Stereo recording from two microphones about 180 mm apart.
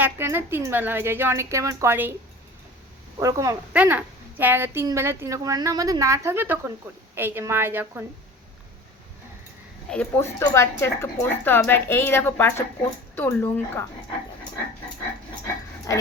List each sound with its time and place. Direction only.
0.0 s a woman's voice: 10° right (ahead or behind)
3.2 s a woman's voice: 15° right (ahead or behind)
9.9 s a woman's voice: 10° left (ahead or behind)